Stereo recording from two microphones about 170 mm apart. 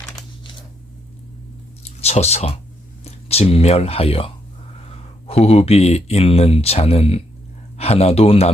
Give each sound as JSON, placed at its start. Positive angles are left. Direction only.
{"t": 1.8, "sound": "speech", "side_deg": 40}